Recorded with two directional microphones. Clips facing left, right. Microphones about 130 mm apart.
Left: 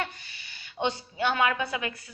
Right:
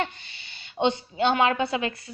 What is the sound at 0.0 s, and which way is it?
Speech, 25° right (ahead or behind).